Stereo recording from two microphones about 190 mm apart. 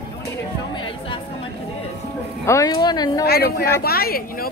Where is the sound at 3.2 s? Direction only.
55° left (ahead or behind).